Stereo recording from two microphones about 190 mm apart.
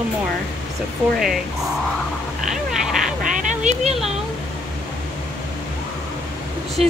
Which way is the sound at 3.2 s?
40° right (ahead or behind).